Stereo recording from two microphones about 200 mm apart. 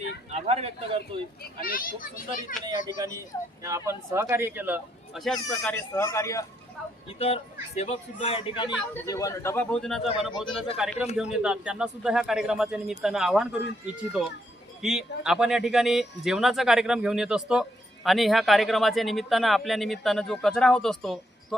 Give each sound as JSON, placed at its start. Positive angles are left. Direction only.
{"t": 0.3, "sound": "a sound", "side_deg": -30}
{"t": 1.6, "sound": "a child's voice", "side_deg": 45}
{"t": 2.6, "sound": "speech", "side_deg": -15}
{"t": 7.8, "sound": "a man's voice", "side_deg": 30}
{"t": 9.0, "sound": "speech", "side_deg": 15}